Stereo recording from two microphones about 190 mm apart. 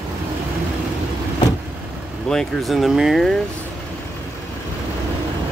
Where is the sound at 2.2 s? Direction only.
Centre (ahead or behind).